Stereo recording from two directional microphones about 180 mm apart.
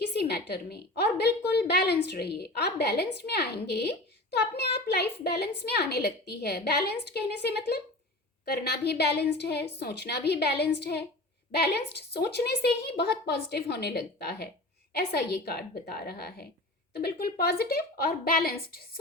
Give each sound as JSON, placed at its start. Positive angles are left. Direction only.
{"t": 0.0, "sound": "a woman's voice", "side_deg": 65}